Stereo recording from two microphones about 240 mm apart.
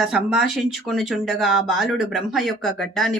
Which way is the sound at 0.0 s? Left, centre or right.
Centre.